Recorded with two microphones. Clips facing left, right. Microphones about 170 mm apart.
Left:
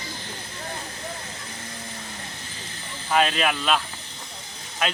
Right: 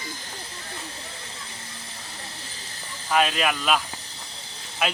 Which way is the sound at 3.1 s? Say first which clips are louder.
Left 1 dB; centre (ahead or behind).